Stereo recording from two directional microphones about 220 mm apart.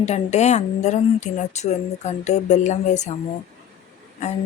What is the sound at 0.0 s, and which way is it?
Speech, 30° left (ahead or behind).